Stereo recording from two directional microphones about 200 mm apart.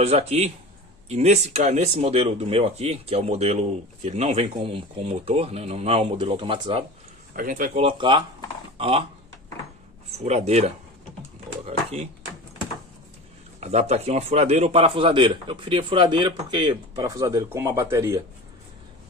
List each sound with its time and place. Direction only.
0.0 s speech: 30° right (ahead or behind)
7.3 s speech: 45° right (ahead or behind)
7.8 s a man's voice: 25° right (ahead or behind)
10.1 s speech: 35° right (ahead or behind)
11.6 s a sound: 30° right (ahead or behind)
13.6 s a man's voice: 35° right (ahead or behind); by 18.2 s 15° right (ahead or behind)